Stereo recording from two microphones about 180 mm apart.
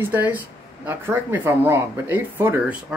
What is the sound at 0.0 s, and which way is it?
Speech, 10° right (ahead or behind).